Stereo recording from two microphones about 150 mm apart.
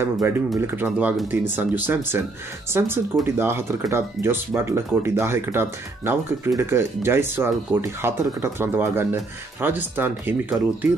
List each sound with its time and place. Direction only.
0.0 s speech: 15° right (ahead or behind)